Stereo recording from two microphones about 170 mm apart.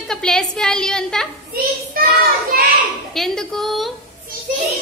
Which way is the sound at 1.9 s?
60° right (ahead or behind).